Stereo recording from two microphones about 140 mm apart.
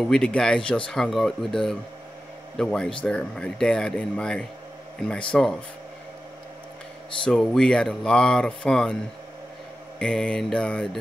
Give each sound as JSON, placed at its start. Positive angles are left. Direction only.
{"t": 0.0, "sound": "speech", "side_deg": 5}
{"t": 7.2, "sound": "speech", "side_deg": 5}
{"t": 9.9, "sound": "speech", "side_deg": 5}